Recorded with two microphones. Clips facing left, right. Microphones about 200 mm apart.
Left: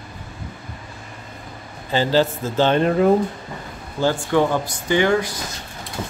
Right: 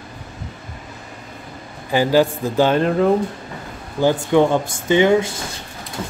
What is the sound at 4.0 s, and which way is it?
Speech, 20° right (ahead or behind).